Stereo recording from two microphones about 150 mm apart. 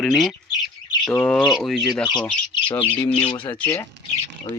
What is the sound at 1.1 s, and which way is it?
Speech, 15° left (ahead or behind).